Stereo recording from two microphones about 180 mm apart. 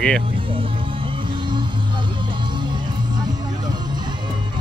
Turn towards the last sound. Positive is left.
turn(degrees=-25)  # may be behind; listen again after turning